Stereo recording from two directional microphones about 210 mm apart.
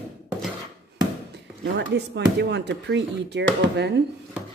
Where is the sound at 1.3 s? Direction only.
55° right (ahead or behind).